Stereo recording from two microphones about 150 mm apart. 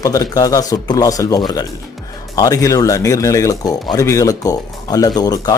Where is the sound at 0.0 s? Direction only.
25° left (ahead or behind).